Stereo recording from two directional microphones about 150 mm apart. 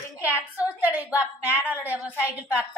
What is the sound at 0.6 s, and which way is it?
A woman's voice, 10° right (ahead or behind).